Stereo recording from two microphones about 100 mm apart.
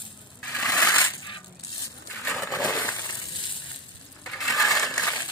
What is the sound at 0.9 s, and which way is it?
Coin, 20° left (ahead or behind).